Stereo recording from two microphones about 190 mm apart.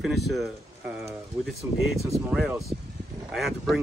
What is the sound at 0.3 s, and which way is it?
Speech, centre (ahead or behind).